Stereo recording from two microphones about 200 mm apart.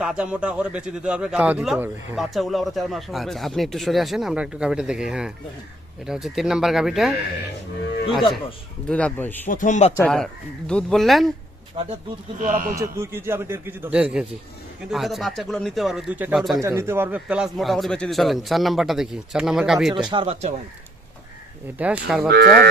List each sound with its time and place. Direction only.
0.0 s a man's voice: 5° right (ahead or behind)
8.9 s speech: 5° left (ahead or behind)
9.5 s speech: 40° left (ahead or behind)
10.7 s a man's voice: 5° left (ahead or behind)
12.4 s speech: 40° right (ahead or behind)
12.7 s a man's voice: 15° right (ahead or behind)
16.6 s a man's voice: 15° right (ahead or behind)
19.9 s speech: 20° right (ahead or behind)
21.8 s a man's voice: 5° right (ahead or behind)
22.3 s speech: 50° right (ahead or behind)